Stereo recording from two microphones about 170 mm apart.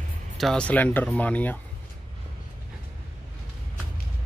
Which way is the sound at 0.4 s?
5° left (ahead or behind).